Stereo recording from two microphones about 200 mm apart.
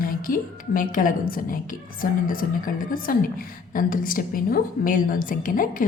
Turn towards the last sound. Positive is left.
turn(degrees=45)  # may be behind; listen again after turning